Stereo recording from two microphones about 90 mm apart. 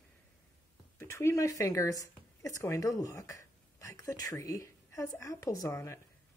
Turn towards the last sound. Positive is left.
turn(degrees=30)  # may be behind; listen again after turning